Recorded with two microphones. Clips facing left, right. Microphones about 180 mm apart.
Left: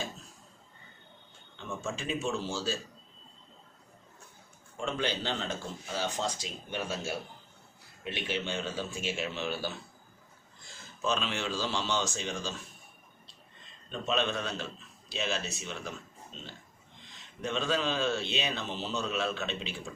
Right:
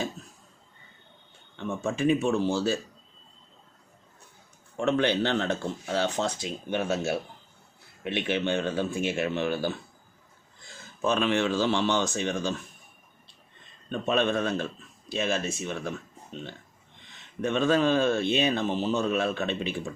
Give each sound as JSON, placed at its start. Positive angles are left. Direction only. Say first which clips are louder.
{"t": 1.5, "sound": "speech", "louder": "right 8 dB", "side_deg": -60}
{"t": 4.8, "sound": "speech", "louder": "right 9 dB", "side_deg": -65}
{"t": 13.9, "sound": "speech", "louder": "right 6 dB", "side_deg": -55}